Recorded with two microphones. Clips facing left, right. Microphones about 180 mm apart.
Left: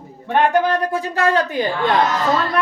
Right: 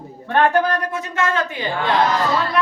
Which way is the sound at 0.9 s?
35° left (ahead or behind).